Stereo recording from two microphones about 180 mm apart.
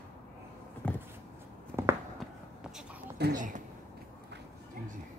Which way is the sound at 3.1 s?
65° right (ahead or behind).